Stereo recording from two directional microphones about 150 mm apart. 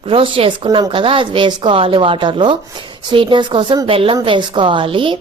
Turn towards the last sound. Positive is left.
turn(degrees=-35)  # may be behind; listen again after turning